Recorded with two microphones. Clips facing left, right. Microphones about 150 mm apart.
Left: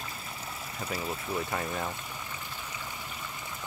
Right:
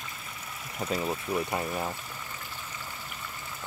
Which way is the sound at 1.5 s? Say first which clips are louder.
Right 2 dB; 20° right (ahead or behind).